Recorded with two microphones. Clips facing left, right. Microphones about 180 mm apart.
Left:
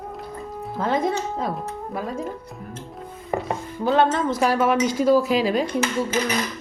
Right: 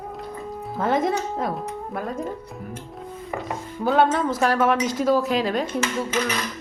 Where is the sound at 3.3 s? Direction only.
35° left (ahead or behind).